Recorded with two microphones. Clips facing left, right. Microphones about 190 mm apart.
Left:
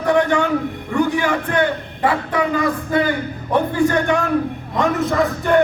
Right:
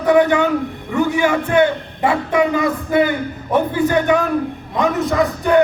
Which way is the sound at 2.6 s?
10° right (ahead or behind).